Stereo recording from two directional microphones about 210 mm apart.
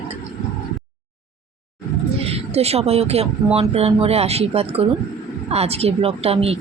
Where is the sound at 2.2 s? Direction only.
30° right (ahead or behind).